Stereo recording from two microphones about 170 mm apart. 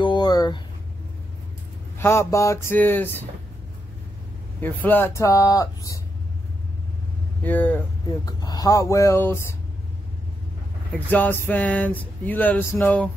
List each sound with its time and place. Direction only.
0.0 s a sound: 25° left (ahead or behind)
2.0 s speech: 15° left (ahead or behind)
4.6 s speech: 10° left (ahead or behind)
7.4 s speech: 10° left (ahead or behind)
8.3 s speech: 20° left (ahead or behind)
10.9 s speech: 10° left (ahead or behind)